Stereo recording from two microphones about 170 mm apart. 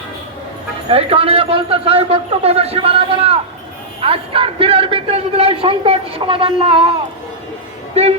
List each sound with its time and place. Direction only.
0.9 s a man's voice: 35° right (ahead or behind)
8.0 s a man's voice: 40° right (ahead or behind)